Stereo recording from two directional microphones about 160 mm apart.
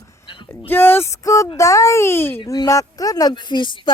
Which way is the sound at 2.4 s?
25° left (ahead or behind).